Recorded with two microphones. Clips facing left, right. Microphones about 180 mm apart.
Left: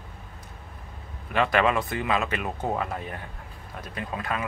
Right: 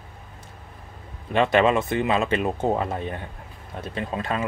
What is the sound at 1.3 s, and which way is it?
Speech, 25° right (ahead or behind).